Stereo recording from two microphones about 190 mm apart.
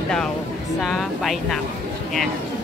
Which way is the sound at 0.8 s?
Centre (ahead or behind).